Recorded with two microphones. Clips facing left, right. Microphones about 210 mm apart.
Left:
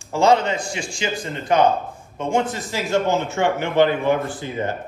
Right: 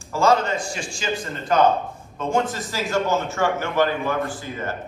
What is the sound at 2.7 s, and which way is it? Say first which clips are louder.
A man's voice: left 2 dB; 20° left (ahead or behind).